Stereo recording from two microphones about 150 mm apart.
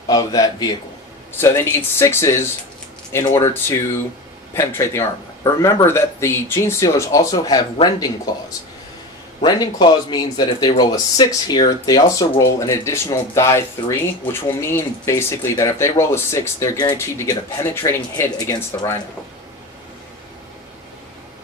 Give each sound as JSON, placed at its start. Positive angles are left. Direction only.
{"t": 0.1, "sound": "speech", "side_deg": 25}
{"t": 9.4, "sound": "speech", "side_deg": 30}